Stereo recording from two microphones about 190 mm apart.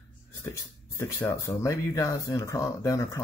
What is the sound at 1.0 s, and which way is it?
Speech, 15° left (ahead or behind).